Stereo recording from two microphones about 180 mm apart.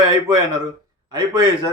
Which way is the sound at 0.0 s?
20° right (ahead or behind).